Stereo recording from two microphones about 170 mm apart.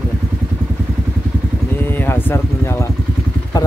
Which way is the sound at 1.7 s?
10° left (ahead or behind).